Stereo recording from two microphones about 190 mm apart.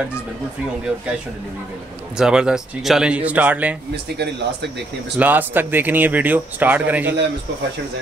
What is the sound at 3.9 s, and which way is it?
Speech, 60° right (ahead or behind).